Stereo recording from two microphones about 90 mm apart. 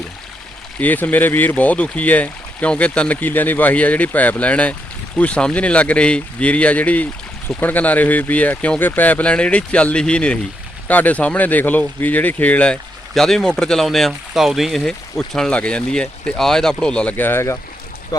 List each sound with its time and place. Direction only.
0.8 s speech: 20° left (ahead or behind)
18.1 s speech: 45° left (ahead or behind)